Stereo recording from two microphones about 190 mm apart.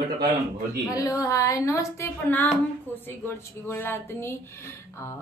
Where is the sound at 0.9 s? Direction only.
15° left (ahead or behind).